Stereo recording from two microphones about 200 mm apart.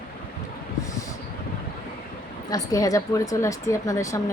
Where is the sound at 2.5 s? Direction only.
15° left (ahead or behind).